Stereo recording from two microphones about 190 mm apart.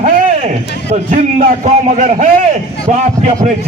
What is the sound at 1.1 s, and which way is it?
A man's voice, 40° right (ahead or behind).